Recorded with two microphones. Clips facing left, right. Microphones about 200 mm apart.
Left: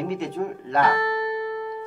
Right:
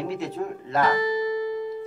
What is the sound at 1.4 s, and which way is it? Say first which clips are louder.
Music: right 1 dB; 60° left (ahead or behind).